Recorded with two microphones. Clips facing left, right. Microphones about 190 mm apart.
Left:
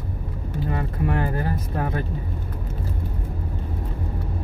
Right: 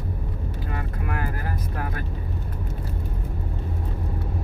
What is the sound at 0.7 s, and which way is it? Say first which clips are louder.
Vehicle: left 7 dB; 30° left (ahead or behind).